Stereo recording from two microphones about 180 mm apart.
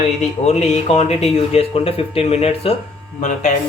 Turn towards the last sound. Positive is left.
turn(degrees=40)  # may be behind; listen again after turning